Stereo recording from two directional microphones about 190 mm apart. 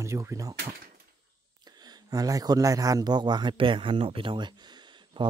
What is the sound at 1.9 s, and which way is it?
Speech, 20° right (ahead or behind).